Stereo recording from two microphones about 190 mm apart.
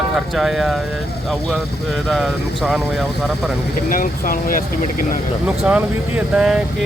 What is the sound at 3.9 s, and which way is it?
Speech, 50° left (ahead or behind).